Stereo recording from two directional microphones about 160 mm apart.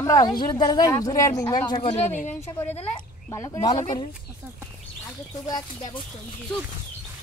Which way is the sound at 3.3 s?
20° left (ahead or behind).